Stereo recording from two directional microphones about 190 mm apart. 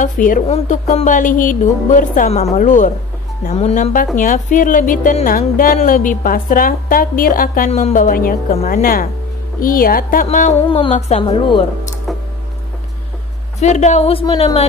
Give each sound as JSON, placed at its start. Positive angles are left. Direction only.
{"t": 0.0, "sound": "a woman's voice", "side_deg": 45}
{"t": 10.7, "sound": "speech", "side_deg": 30}
{"t": 13.6, "sound": "a woman's voice", "side_deg": 35}